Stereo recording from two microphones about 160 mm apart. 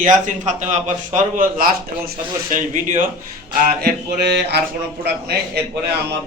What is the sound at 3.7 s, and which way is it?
Mantra, 80° right.